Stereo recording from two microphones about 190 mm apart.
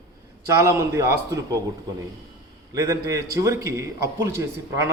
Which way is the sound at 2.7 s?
20° right (ahead or behind).